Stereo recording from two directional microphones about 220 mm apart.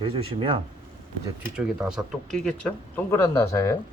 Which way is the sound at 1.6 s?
Centre (ahead or behind).